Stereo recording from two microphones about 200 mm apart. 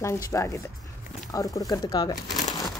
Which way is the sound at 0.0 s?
15° left (ahead or behind).